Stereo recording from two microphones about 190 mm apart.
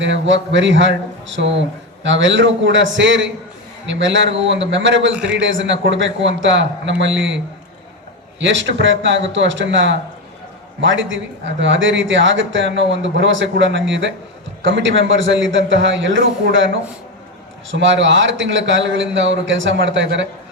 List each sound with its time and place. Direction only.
0.0 s a man's voice: 70° right (ahead or behind)
17.7 s a man's voice: 75° right (ahead or behind)